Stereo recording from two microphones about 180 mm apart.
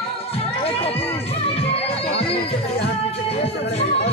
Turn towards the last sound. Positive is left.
turn(degrees=35)  # may be behind; listen again after turning